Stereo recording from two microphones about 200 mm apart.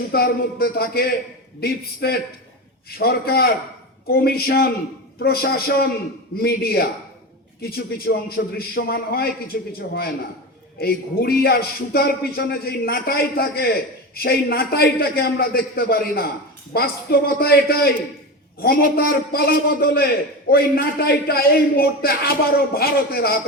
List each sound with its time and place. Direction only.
0.1 s speech: 50° left (ahead or behind)